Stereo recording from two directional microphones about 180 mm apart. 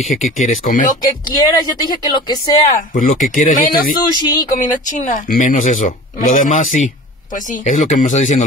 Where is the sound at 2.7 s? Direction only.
45° left (ahead or behind).